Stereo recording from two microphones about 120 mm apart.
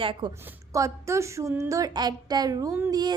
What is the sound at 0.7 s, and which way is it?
A woman's voice, 25° right (ahead or behind).